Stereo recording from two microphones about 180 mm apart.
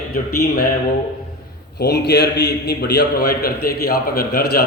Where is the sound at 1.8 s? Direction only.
65° left (ahead or behind).